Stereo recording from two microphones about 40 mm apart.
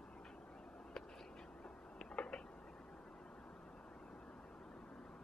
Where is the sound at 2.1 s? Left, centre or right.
Left.